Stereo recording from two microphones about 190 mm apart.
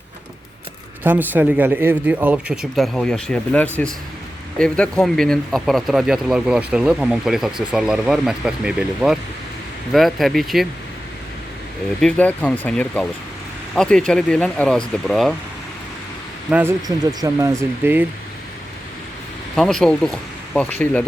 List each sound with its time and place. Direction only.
1.0 s speech: 10° right (ahead or behind)
11.9 s speech: 5° left (ahead or behind)
16.5 s speech: 10° right (ahead or behind)
16.8 s speech: 20° right (ahead or behind)
19.5 s speech: 5° left (ahead or behind)